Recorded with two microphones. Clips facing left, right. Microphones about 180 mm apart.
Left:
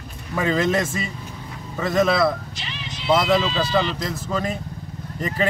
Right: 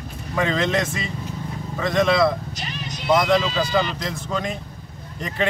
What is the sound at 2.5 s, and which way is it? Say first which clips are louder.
Music: right 3 dB; 45° right (ahead or behind).